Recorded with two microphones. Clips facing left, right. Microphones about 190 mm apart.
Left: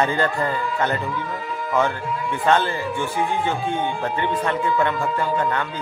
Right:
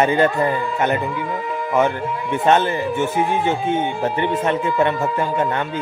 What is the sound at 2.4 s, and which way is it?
Speech, 20° right (ahead or behind).